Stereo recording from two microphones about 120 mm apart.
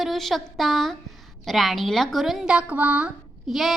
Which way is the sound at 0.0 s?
Centre (ahead or behind).